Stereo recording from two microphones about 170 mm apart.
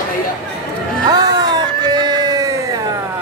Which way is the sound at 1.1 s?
20° right (ahead or behind).